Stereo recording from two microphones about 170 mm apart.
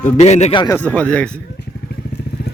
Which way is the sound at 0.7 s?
10° left (ahead or behind).